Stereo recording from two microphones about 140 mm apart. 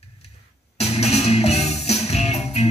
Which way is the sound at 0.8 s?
50° left (ahead or behind).